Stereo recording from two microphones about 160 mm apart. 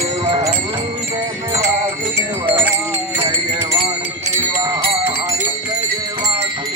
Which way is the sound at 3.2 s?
35° right (ahead or behind).